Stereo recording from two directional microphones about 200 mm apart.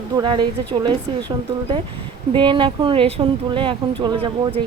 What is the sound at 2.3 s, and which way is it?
Speech, 25° right (ahead or behind).